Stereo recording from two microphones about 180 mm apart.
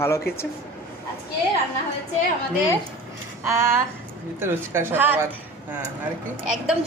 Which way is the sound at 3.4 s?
15° right (ahead or behind).